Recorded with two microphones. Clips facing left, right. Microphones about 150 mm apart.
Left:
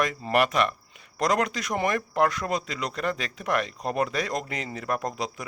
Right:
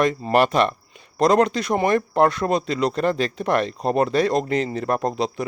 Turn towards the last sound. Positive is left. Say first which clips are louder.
# right 7 dB
turn(degrees=-30)  # may be behind; listen again after turning